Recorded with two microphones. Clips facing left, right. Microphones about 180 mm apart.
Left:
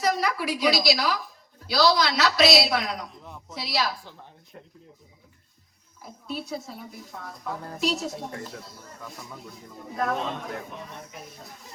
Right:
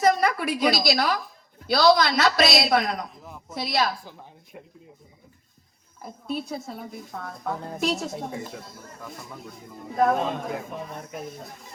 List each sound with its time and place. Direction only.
0.0 s a woman's voice: 50° right (ahead or behind)
4.5 s speech: 10° right (ahead or behind)
6.0 s speech: 55° right (ahead or behind)
8.3 s speech: 5° right (ahead or behind)
9.9 s speech: 50° right (ahead or behind)